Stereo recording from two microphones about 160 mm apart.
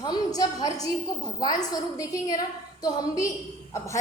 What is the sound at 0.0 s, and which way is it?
A woman's voice, 25° left (ahead or behind).